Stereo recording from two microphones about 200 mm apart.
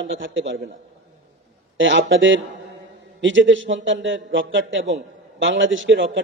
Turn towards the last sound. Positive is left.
turn(degrees=-70)  # may be behind; listen again after turning